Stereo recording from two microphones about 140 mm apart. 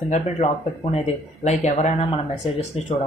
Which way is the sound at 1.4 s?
55° left (ahead or behind).